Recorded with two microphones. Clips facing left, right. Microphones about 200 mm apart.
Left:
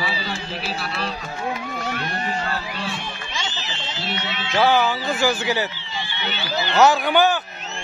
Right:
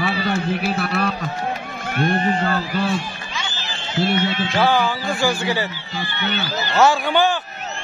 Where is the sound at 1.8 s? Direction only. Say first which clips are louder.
Right 6 dB; 50° right (ahead or behind).